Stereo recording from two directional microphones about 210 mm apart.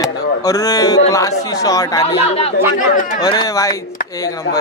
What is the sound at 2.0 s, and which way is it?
A man's voice, 30° left (ahead or behind).